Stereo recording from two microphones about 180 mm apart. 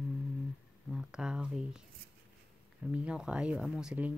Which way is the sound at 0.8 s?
5° right (ahead or behind).